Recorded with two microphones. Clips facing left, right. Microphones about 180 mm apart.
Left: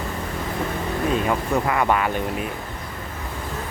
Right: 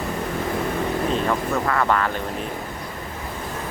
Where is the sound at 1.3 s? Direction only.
15° left (ahead or behind).